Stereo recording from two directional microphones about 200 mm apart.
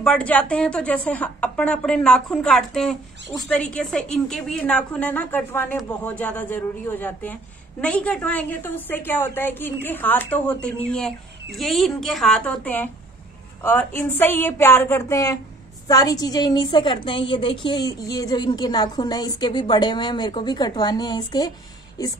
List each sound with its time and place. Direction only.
0.0 s a woman's voice: 5° left (ahead or behind)